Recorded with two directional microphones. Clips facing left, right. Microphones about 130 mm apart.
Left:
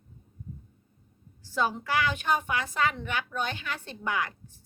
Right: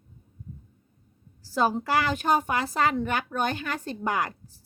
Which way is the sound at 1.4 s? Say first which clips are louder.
Right 4 dB; 35° right (ahead or behind).